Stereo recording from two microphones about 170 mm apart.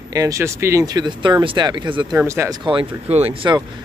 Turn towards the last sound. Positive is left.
turn(degrees=-30)  # may be behind; listen again after turning